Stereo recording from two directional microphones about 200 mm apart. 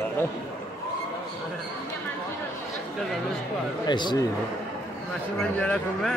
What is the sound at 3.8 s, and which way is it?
Speech, 20° left (ahead or behind).